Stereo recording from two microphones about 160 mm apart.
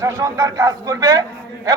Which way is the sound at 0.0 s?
20° right (ahead or behind).